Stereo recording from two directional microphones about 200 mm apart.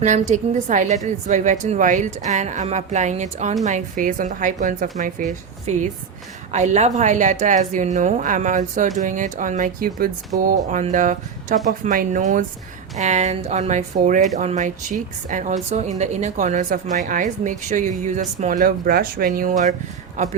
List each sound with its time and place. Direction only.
0.0 s a woman's voice: 40° right (ahead or behind)